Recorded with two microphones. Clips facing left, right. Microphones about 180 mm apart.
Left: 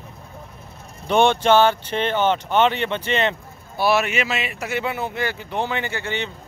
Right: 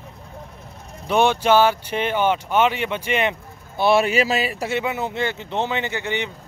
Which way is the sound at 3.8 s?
30° right (ahead or behind).